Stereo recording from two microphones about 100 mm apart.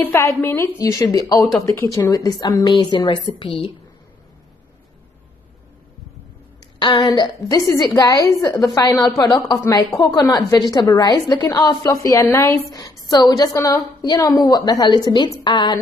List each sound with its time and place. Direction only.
0.0 s a woman's voice: 30° left (ahead or behind)
2.7 s a woman's voice: 50° left (ahead or behind)
7.0 s a woman's voice: 40° left (ahead or behind)
13.1 s a woman's voice: 40° left (ahead or behind)